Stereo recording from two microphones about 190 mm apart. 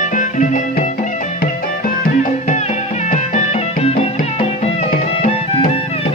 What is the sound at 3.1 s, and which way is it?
Music, 40° left (ahead or behind).